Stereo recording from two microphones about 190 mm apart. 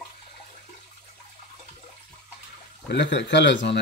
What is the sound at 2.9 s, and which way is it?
Speech, 65° left (ahead or behind).